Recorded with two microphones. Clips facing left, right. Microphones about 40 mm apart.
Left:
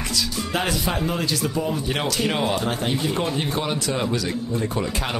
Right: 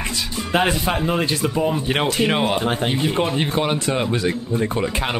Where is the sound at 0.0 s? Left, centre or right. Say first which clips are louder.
Even; right.